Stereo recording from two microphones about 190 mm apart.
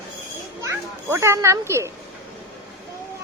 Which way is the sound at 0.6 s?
15° right (ahead or behind).